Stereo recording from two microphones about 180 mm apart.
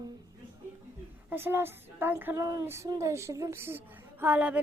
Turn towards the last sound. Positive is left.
turn(degrees=-10)  # may be behind; listen again after turning